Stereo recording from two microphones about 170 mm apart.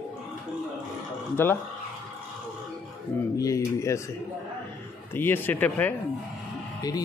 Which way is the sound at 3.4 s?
20° left (ahead or behind).